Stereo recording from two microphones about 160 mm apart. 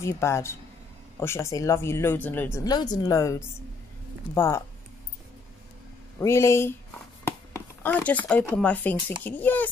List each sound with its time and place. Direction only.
0.0 s speech: 15° left (ahead or behind)
2.6 s speech: 25° left (ahead or behind)
6.1 s speech: 15° left (ahead or behind)